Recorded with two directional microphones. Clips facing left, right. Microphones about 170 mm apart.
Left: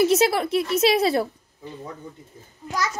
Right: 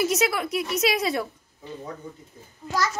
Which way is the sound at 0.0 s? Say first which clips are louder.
Left 5 dB; 30° left (ahead or behind).